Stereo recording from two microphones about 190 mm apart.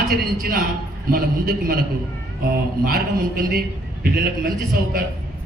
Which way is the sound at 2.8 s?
50° right (ahead or behind).